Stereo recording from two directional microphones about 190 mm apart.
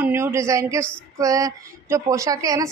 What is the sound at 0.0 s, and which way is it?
A woman's voice, 10° right (ahead or behind).